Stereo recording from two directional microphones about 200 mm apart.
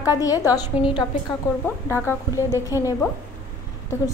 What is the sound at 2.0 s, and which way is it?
A woman's voice, 15° left (ahead or behind).